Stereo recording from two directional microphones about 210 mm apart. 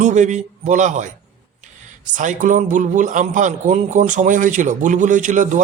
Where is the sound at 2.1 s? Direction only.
35° right (ahead or behind).